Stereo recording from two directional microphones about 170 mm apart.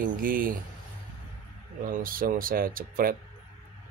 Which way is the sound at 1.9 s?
55° right (ahead or behind).